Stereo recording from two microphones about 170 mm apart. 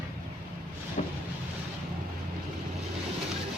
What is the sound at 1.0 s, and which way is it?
Vehicle, 40° left (ahead or behind).